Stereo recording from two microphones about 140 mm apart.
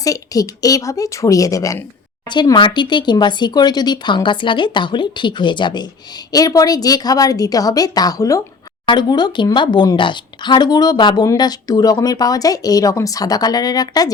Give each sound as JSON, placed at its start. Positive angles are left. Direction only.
{"t": 0.0, "sound": "speech", "side_deg": 25}